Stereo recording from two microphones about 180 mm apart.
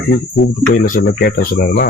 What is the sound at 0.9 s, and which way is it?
Speech, 50° left (ahead or behind).